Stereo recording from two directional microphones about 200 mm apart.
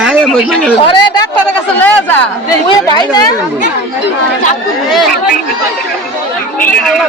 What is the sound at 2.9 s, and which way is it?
Speech, 20° left (ahead or behind).